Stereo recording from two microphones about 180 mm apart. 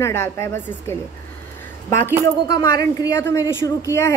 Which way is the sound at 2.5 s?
20° left (ahead or behind).